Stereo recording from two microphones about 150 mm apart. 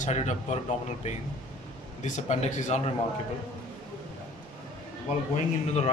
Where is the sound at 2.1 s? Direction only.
55° left (ahead or behind).